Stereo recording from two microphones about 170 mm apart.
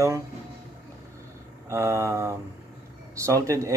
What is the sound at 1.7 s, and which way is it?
Speech, 15° right (ahead or behind).